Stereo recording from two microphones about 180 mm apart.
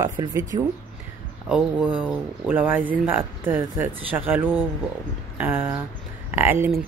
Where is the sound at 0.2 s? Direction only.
20° right (ahead or behind).